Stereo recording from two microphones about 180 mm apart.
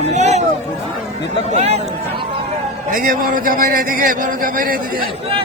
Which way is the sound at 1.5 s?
35° right (ahead or behind).